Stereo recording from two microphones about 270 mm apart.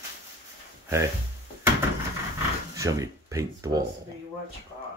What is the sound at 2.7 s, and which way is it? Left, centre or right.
Speech, centre.